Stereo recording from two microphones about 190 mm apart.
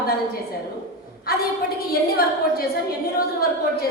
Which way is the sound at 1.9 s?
50° left (ahead or behind).